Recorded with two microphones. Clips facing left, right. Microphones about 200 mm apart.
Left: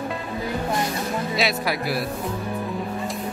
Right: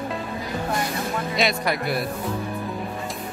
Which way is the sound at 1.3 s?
5° left (ahead or behind).